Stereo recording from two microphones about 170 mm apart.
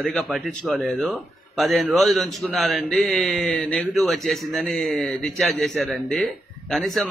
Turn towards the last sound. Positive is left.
turn(degrees=0)  # may be behind; listen again after turning